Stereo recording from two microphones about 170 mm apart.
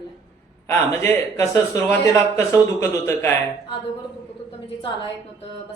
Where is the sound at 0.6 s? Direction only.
15° left (ahead or behind).